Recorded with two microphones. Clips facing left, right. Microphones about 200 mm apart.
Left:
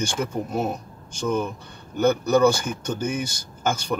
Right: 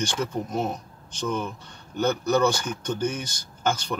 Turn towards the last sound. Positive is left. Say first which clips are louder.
# left 2 dB
turn(degrees=10)  # may be behind; listen again after turning